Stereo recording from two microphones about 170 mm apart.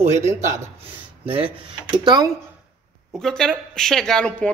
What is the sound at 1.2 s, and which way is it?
Speech, 30° right (ahead or behind).